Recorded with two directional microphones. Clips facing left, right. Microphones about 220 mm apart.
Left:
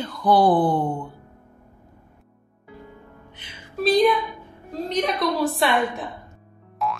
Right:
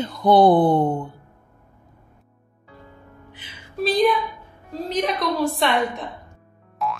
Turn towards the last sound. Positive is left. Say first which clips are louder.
# even
turn(degrees=0)  # may be behind; listen again after turning